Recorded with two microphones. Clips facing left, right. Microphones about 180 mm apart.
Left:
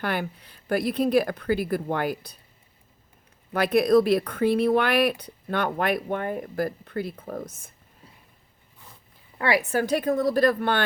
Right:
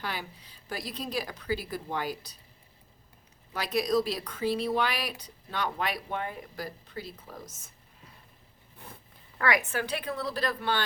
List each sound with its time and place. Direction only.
0.0 s speech: 60° left (ahead or behind)
3.5 s speech: 55° left (ahead or behind)
8.8 s zipper: 60° right (ahead or behind)
9.4 s a woman's voice: 30° left (ahead or behind); by 10.8 s 55° left (ahead or behind)